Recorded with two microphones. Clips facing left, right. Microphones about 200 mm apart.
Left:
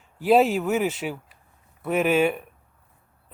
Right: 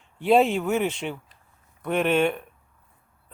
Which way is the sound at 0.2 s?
Centre (ahead or behind).